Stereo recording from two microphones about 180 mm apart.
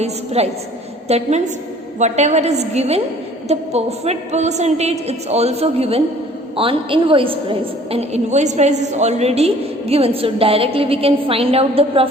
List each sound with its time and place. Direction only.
0.0 s a woman's voice: 35° right (ahead or behind)